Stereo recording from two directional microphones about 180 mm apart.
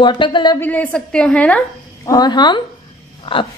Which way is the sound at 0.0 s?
25° left (ahead or behind).